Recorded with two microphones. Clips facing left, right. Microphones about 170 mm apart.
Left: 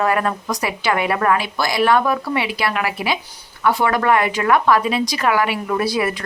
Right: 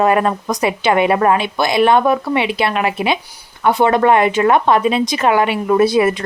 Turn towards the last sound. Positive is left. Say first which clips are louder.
# right 7 dB
turn(degrees=-25)  # may be behind; listen again after turning